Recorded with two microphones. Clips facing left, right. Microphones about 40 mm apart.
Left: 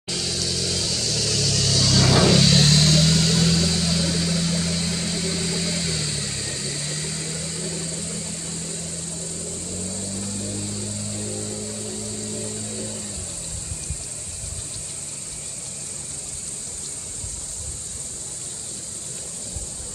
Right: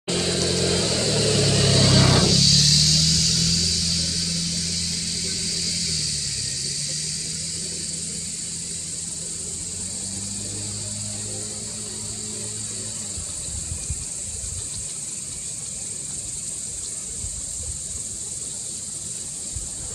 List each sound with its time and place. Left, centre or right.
0.0 s vehicle: right
2.2 s vehicle: left; by 12.9 s centre